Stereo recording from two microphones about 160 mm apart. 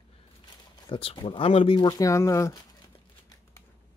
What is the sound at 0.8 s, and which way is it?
Speech, 35° left (ahead or behind).